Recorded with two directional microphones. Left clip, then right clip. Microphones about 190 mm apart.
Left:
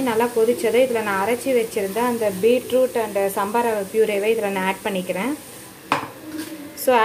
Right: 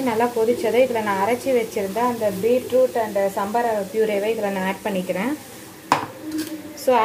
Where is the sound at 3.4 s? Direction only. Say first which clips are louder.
Left 1 dB; 15° left (ahead or behind).